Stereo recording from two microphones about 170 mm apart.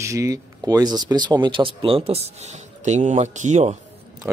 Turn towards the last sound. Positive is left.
turn(degrees=-45)  # may be behind; listen again after turning